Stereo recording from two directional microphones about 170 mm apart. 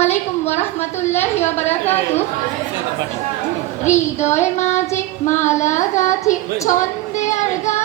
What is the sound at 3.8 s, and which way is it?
A woman's voice, 45° left (ahead or behind).